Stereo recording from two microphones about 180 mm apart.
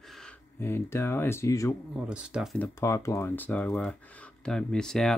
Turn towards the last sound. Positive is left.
turn(degrees=0)  # may be behind; listen again after turning